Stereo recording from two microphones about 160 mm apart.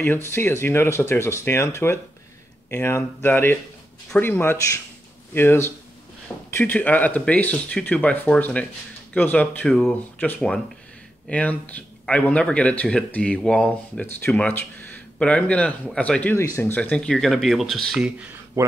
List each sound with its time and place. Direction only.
0.3 s speech: 15° left (ahead or behind)
18.6 s speech: 20° right (ahead or behind)